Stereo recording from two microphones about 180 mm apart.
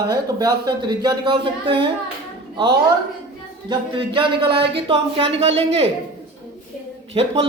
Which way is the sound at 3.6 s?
30° right (ahead or behind).